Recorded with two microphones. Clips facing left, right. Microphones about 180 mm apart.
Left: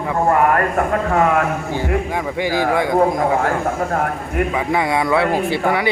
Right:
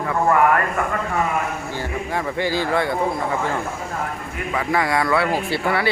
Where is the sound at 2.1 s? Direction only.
15° left (ahead or behind).